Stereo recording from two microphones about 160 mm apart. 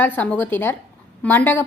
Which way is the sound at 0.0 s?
10° left (ahead or behind).